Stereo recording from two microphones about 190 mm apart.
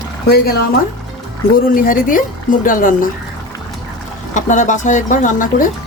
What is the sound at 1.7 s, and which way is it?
Speech, 45° left (ahead or behind).